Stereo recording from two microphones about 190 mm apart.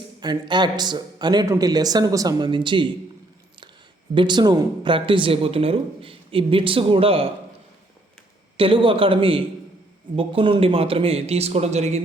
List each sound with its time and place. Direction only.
0.2 s speech: 20° right (ahead or behind)
4.1 s speech: 25° right (ahead or behind)
8.5 s a man's voice: 25° right (ahead or behind)